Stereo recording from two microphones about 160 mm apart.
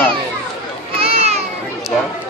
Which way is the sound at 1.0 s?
40° right (ahead or behind).